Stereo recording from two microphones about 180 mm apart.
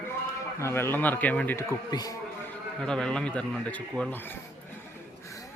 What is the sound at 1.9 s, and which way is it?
Speech, 20° left (ahead or behind).